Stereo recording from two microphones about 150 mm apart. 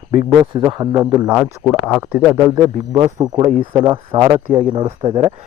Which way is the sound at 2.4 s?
20° right (ahead or behind).